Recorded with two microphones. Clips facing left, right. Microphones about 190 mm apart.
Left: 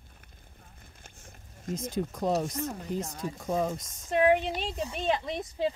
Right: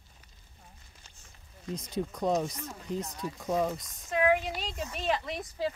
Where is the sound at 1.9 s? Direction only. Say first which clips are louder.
Even; centre (ahead or behind).